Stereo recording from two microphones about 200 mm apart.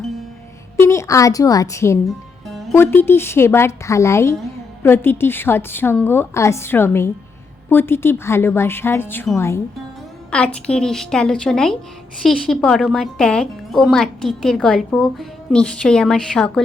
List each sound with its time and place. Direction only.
0.8 s a woman's voice: 15° left (ahead or behind)
2.0 s music: centre (ahead or behind)
2.7 s a woman's voice: 10° left (ahead or behind)